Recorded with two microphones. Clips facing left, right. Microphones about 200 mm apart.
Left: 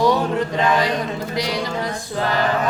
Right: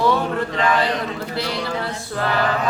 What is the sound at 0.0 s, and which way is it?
Chant, 15° left (ahead or behind).